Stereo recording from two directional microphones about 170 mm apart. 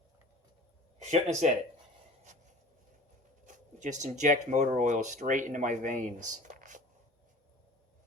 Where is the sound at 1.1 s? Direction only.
45° right (ahead or behind).